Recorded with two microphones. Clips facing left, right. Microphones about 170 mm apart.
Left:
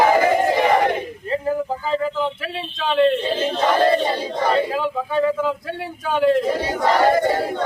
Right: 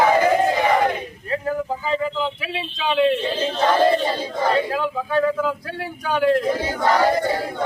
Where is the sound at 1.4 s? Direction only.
Centre (ahead or behind).